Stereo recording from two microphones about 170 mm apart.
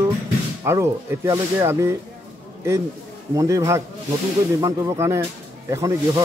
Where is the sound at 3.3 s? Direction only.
20° right (ahead or behind).